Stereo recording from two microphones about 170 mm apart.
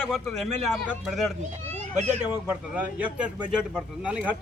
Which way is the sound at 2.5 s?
10° right (ahead or behind).